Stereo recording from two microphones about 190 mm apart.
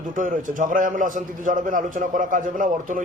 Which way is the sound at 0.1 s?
45° right (ahead or behind).